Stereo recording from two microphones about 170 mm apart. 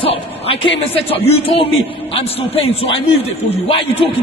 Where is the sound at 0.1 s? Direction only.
35° left (ahead or behind).